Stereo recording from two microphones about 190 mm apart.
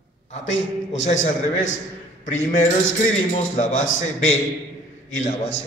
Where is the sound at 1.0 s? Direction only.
40° left (ahead or behind).